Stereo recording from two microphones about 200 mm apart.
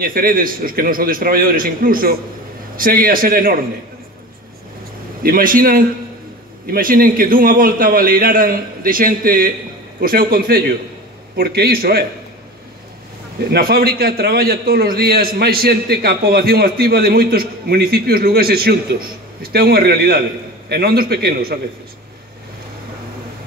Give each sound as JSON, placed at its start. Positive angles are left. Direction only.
{"t": 0.0, "sound": "a man's voice", "side_deg": -45}
{"t": 5.2, "sound": "a man's voice", "side_deg": -45}
{"t": 13.5, "sound": "a man's voice", "side_deg": -50}